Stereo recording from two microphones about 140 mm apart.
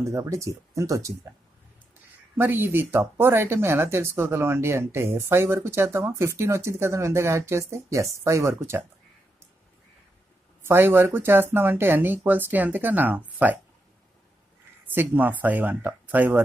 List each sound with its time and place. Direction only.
0.0 s speech: 20° right (ahead or behind)
2.3 s speech: 15° right (ahead or behind)
10.6 s speech: 15° right (ahead or behind)
15.0 s speech: 15° right (ahead or behind)